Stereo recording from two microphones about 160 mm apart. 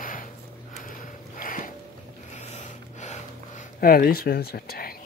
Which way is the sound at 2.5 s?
45° left (ahead or behind).